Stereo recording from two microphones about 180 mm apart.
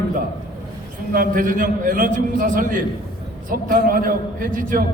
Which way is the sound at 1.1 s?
50° right (ahead or behind).